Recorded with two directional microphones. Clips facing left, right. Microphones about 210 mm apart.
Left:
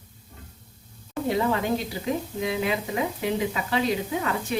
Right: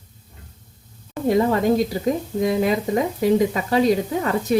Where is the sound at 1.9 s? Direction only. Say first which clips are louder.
Right 6 dB; 50° right (ahead or behind).